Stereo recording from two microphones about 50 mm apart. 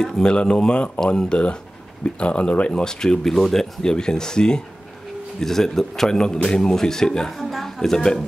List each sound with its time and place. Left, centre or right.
0.0 s a man's voice: centre